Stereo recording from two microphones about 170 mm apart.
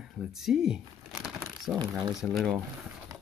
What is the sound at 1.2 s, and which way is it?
Crumpling, centre (ahead or behind).